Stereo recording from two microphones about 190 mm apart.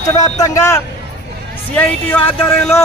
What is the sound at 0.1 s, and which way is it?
A man's voice, 20° left (ahead or behind).